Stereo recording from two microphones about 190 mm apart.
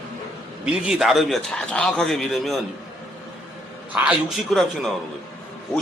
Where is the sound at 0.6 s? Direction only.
5° right (ahead or behind).